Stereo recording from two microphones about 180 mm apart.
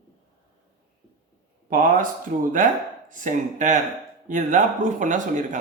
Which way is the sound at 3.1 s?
45° right (ahead or behind).